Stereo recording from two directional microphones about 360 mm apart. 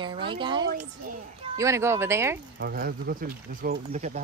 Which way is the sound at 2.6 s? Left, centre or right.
Right.